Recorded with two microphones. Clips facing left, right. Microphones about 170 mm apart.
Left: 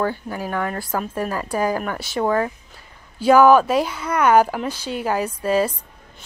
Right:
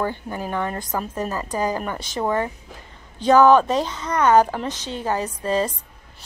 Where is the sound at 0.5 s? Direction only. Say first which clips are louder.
Left 1 dB; 20° right (ahead or behind).